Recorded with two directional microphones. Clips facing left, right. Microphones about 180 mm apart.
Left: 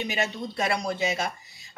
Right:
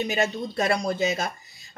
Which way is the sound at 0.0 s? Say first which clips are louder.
Right 4 dB; 40° right (ahead or behind).